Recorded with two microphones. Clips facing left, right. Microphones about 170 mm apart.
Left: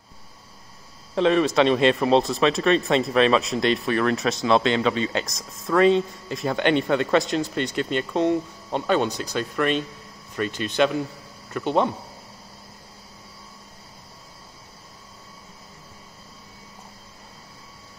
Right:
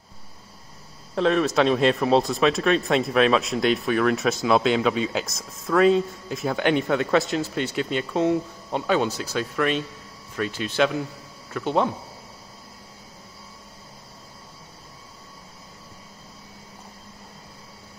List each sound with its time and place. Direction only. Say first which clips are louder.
1.1 s speech: left 2 dB; centre (ahead or behind)